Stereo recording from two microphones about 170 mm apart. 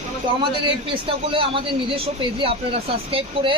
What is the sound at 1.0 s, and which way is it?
Speech, 30° right (ahead or behind).